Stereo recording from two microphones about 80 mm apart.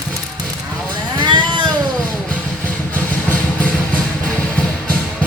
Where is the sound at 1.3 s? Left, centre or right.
Right.